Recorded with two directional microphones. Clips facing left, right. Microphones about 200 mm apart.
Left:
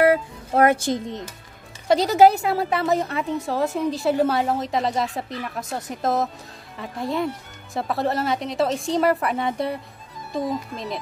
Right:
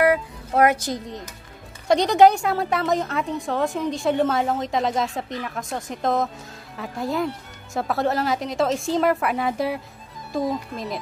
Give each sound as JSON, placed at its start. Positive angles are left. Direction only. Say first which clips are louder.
{"t": 0.0, "sound": "music", "louder": "left 2 dB", "side_deg": 30}
{"t": 1.9, "sound": "a woman's voice", "louder": "even", "side_deg": 5}